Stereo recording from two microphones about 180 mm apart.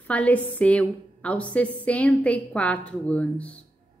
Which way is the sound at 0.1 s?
10° left (ahead or behind).